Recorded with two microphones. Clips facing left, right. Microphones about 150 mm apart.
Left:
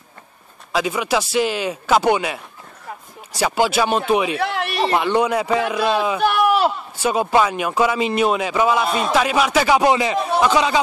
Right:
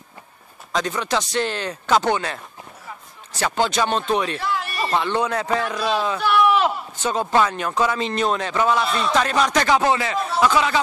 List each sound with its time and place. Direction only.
0.7 s a man's voice: 10° left (ahead or behind)
4.4 s speech: 70° left (ahead or behind)
4.9 s a man's voice: 15° left (ahead or behind)
6.2 s a sound: 45° left (ahead or behind)
7.0 s a man's voice: 10° left (ahead or behind)